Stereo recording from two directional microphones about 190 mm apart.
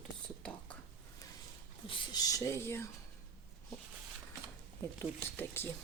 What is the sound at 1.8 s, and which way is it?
Speech, 25° left (ahead or behind).